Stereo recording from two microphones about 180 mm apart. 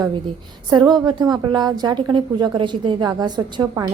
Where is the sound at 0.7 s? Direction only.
25° right (ahead or behind).